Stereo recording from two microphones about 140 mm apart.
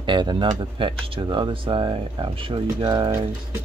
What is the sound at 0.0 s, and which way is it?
Speech, 35° right (ahead or behind).